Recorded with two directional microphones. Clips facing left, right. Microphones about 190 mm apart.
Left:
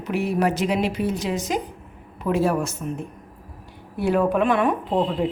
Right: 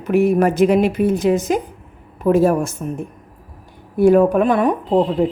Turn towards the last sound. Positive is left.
turn(degrees=-40)  # may be behind; listen again after turning